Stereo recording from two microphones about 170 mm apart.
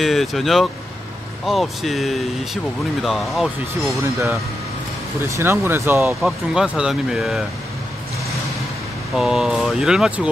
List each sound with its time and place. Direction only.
0.0 s speech: centre (ahead or behind)
4.0 s speech: 15° right (ahead or behind)
6.2 s speech: 5° right (ahead or behind)
9.1 s speech: centre (ahead or behind)